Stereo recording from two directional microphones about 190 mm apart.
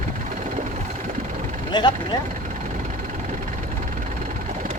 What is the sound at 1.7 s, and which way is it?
Speech, 20° left (ahead or behind).